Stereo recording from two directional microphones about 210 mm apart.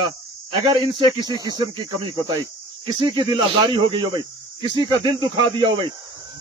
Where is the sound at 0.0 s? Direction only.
20° right (ahead or behind).